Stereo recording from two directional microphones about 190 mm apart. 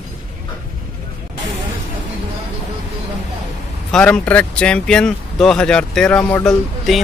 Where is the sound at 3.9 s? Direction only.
5° left (ahead or behind).